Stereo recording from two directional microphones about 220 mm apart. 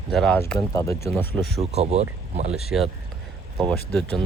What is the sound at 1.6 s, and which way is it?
Speech, 30° right (ahead or behind).